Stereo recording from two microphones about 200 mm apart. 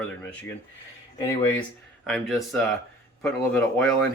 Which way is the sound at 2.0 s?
Centre (ahead or behind).